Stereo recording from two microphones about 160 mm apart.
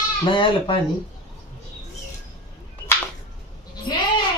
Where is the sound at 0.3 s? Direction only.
30° left (ahead or behind).